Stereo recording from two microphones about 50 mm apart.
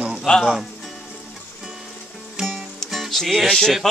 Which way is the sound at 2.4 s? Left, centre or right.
Centre.